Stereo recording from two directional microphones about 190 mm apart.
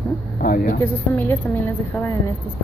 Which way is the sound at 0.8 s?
10° left (ahead or behind).